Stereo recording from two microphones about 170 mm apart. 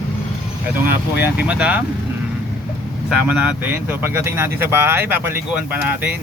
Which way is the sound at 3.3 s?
10° right (ahead or behind).